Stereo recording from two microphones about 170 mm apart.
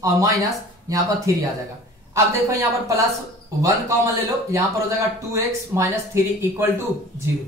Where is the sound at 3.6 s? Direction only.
20° right (ahead or behind).